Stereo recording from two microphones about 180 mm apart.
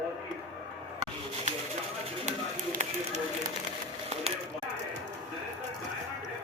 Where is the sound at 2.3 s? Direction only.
40° right (ahead or behind).